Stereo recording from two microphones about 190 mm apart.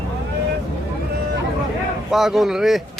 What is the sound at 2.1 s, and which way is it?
Speech, centre (ahead or behind).